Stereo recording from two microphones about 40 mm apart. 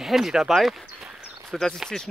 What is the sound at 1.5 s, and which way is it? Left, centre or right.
Speech, centre.